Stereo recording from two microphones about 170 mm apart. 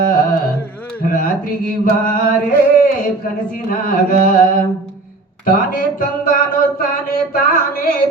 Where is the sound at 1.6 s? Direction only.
55° left (ahead or behind).